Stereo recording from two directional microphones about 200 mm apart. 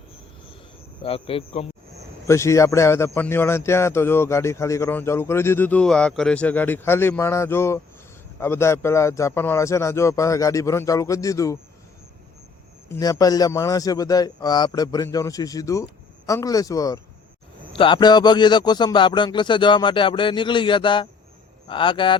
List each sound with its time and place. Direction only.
1.0 s a man's voice: 30° left (ahead or behind)
2.2 s speech: 15° left (ahead or behind)
12.9 s a man's voice: 15° left (ahead or behind)